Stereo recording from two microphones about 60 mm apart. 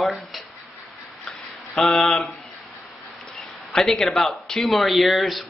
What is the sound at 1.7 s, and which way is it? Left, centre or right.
Speech, centre.